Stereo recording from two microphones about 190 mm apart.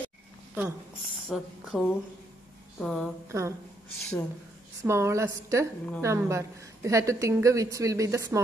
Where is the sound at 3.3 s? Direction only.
15° right (ahead or behind).